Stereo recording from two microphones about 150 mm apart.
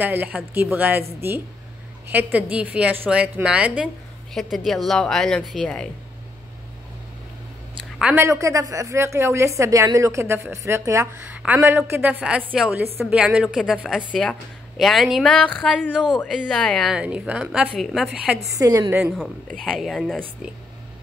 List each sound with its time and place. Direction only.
0.0 s a woman's voice: 10° right (ahead or behind)
8.0 s a woman's voice: 15° right (ahead or behind)
18.6 s a woman's voice: 20° right (ahead or behind)
19.1 s a woman's voice: 5° left (ahead or behind)